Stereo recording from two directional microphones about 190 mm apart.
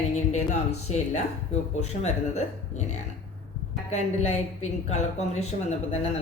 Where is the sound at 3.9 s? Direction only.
35° left (ahead or behind).